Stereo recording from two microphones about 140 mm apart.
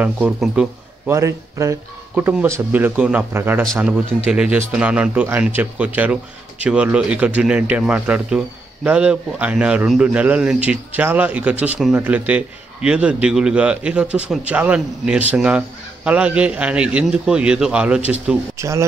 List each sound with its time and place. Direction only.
0.0 s speech: 5° right (ahead or behind)
1.0 s a man's voice: 20° right (ahead or behind)
18.6 s speech: 20° right (ahead or behind)